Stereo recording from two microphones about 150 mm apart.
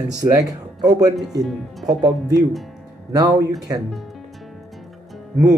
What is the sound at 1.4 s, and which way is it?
Speech, centre (ahead or behind).